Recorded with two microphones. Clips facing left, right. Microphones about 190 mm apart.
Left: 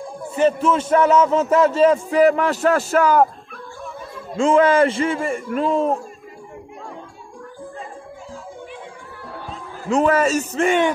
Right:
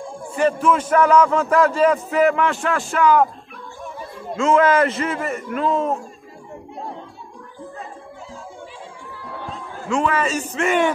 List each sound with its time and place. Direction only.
0.4 s a man's voice: 25° left (ahead or behind); by 3.3 s 40° left (ahead or behind)
4.4 s a man's voice: 30° left (ahead or behind)
9.8 s speech: 40° left (ahead or behind)